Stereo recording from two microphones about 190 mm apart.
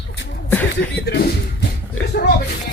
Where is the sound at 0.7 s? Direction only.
60° left (ahead or behind).